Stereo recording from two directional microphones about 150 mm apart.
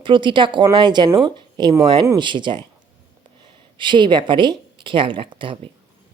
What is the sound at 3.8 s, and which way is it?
Speech, 30° right (ahead or behind).